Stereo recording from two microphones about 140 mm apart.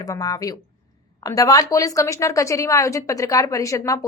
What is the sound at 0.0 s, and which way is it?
A woman's voice, 25° left (ahead or behind).